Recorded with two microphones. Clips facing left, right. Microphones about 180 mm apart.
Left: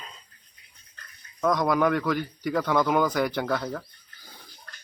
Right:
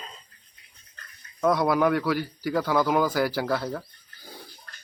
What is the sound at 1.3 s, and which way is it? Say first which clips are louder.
Speech: right 1 dB; 10° right (ahead or behind).